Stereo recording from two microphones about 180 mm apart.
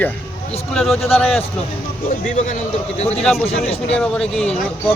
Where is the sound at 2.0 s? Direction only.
45° left (ahead or behind).